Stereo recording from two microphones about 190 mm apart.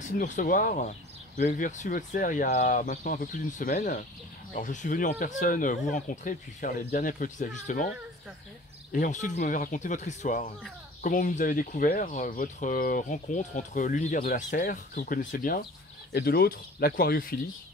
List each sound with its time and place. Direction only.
0.0 s speech: 45° left (ahead or behind)
8.9 s speech: 40° left (ahead or behind)